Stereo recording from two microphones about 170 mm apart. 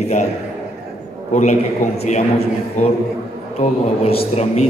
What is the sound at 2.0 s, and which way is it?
A man's voice, 40° left (ahead or behind).